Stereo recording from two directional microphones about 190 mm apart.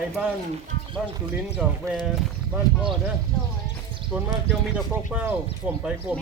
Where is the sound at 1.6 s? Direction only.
5° right (ahead or behind).